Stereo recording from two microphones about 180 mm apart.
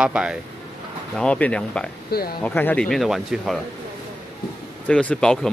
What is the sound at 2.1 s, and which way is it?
Speech, 60° left (ahead or behind).